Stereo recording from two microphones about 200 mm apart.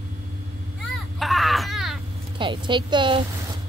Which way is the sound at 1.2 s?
Centre (ahead or behind).